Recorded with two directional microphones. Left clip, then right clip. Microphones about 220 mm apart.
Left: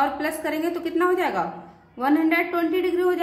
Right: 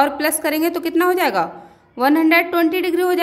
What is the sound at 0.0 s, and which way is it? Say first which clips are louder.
Speech: right 6 dB; 50° right (ahead or behind).